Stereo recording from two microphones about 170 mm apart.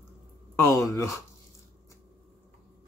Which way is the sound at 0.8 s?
20° left (ahead or behind).